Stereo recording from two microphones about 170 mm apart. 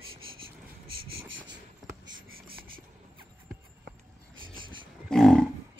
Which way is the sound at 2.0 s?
60° right (ahead or behind).